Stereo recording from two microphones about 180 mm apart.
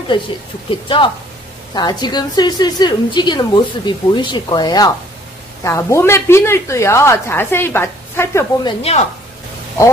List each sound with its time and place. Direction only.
0.1 s a woman's voice: 25° left (ahead or behind)
8.6 s speech: 35° left (ahead or behind)